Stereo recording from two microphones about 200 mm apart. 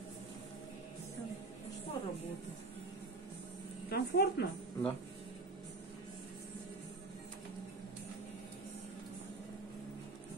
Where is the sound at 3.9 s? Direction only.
50° left (ahead or behind).